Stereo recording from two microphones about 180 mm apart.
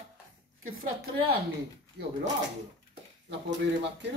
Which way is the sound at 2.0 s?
65° right (ahead or behind).